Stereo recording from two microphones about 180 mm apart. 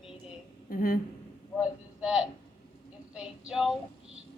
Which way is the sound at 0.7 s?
50° left (ahead or behind).